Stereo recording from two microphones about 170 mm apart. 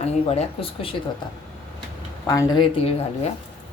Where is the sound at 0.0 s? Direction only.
40° left (ahead or behind).